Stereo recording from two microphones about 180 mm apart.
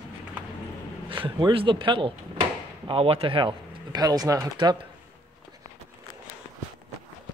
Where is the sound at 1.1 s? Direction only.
25° right (ahead or behind).